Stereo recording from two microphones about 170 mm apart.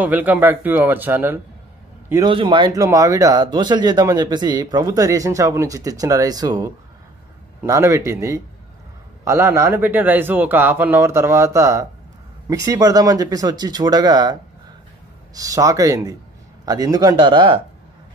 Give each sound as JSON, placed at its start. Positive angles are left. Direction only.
{"t": 0.0, "sound": "a man's voice", "side_deg": -10}
{"t": 2.2, "sound": "a man's voice", "side_deg": -30}
{"t": 15.3, "sound": "speech", "side_deg": -20}